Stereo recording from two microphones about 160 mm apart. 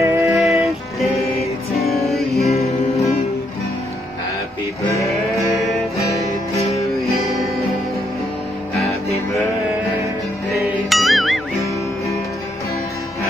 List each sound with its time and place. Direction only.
0.0 s music: 20° right (ahead or behind)
0.4 s music: centre (ahead or behind)
2.4 s music: 40° left (ahead or behind)
5.9 s music: 20° left (ahead or behind)
7.0 s music: centre (ahead or behind)
10.6 s music: centre (ahead or behind)